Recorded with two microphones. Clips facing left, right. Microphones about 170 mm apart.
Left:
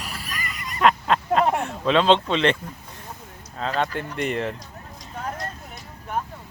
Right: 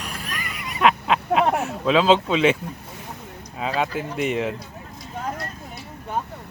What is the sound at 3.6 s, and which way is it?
Speech, 5° right (ahead or behind).